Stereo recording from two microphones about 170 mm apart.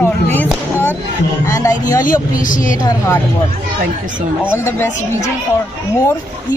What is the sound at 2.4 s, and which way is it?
Speech, 50° left (ahead or behind).